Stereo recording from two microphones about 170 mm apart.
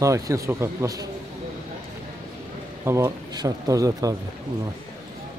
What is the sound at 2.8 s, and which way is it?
Speech, 15° right (ahead or behind).